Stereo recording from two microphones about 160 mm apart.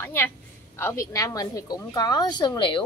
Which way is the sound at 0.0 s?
15° left (ahead or behind).